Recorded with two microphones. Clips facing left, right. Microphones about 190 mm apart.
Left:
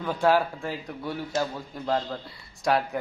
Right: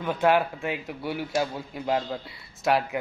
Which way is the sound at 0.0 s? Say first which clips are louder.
Even; centre (ahead or behind).